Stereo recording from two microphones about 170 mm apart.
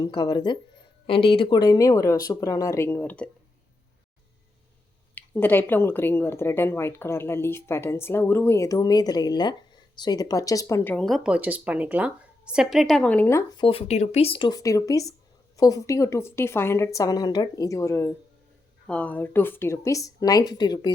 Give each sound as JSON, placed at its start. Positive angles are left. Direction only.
{"t": 0.0, "sound": "speech", "side_deg": 25}
{"t": 5.1, "sound": "speech", "side_deg": 10}
{"t": 13.6, "sound": "speech", "side_deg": 35}